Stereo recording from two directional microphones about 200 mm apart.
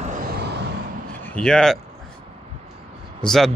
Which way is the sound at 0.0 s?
50° right (ahead or behind).